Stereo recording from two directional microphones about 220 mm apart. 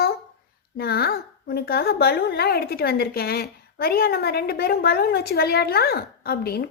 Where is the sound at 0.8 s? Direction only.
45° left (ahead or behind).